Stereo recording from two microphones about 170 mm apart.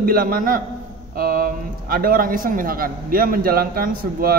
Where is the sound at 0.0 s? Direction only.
60° right (ahead or behind).